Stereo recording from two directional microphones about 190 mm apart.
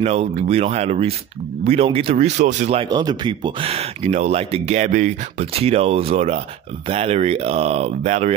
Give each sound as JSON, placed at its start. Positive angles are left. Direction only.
{"t": 0.0, "sound": "speech", "side_deg": -35}